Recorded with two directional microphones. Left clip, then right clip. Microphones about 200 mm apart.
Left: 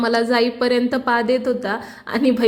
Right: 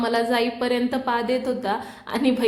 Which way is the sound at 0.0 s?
20° left (ahead or behind).